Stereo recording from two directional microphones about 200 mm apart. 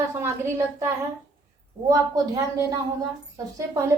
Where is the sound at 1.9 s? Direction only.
15° right (ahead or behind).